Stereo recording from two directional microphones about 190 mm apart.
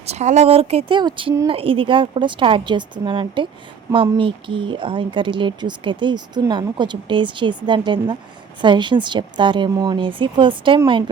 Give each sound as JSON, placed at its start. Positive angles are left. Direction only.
{"t": 0.0, "sound": "speech", "side_deg": -35}